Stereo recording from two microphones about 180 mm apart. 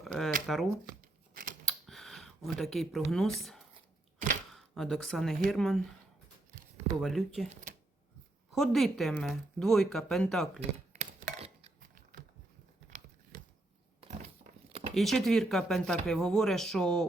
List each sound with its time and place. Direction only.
0.0 s shuffling cards: centre (ahead or behind)
1.3 s scissors: 50° right (ahead or behind)
1.6 s a sound: centre (ahead or behind)
4.5 s speech: centre (ahead or behind)
7.5 s cash register: 45° right (ahead or behind)
8.5 s speech: centre (ahead or behind)
10.9 s a sound: 40° right (ahead or behind)
14.7 s a sound: 30° right (ahead or behind)
14.9 s speech: centre (ahead or behind)